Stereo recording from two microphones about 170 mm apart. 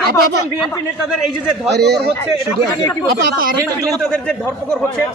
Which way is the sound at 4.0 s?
5° left (ahead or behind).